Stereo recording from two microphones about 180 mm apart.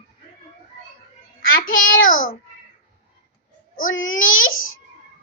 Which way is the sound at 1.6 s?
90° left.